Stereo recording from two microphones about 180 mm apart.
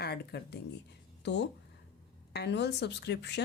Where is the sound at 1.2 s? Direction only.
75° left (ahead or behind).